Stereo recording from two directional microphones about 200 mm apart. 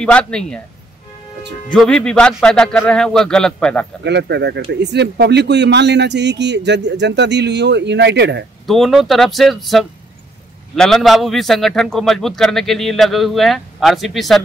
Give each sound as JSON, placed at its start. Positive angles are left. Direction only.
{"t": 0.0, "sound": "a man's voice", "side_deg": 5}
{"t": 1.7, "sound": "a man's voice", "side_deg": 5}
{"t": 4.0, "sound": "speech", "side_deg": -60}
{"t": 8.6, "sound": "a man's voice", "side_deg": 0}